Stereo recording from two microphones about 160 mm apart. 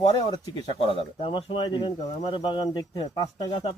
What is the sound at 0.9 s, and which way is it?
Speech, 35° left (ahead or behind).